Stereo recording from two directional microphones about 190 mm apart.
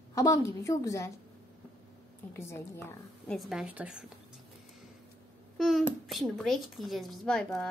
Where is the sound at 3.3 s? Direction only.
Centre (ahead or behind).